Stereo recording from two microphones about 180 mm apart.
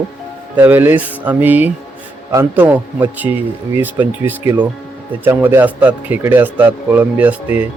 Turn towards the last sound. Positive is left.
turn(degrees=-10)  # may be behind; listen again after turning